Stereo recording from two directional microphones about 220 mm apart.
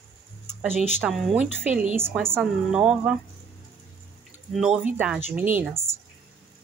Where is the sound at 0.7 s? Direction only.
30° left (ahead or behind).